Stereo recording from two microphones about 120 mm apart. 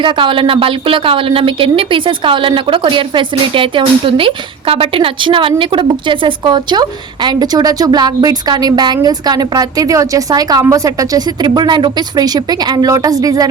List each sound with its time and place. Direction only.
0.0 s a woman's voice: 45° right (ahead or behind); by 13.5 s 30° right (ahead or behind)